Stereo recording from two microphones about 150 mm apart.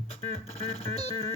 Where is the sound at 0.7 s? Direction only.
40° left (ahead or behind).